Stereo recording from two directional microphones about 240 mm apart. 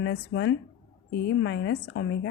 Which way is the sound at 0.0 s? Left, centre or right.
Left.